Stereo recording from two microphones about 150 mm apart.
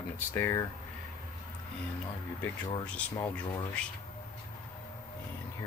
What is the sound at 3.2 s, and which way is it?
Speech, 10° left (ahead or behind).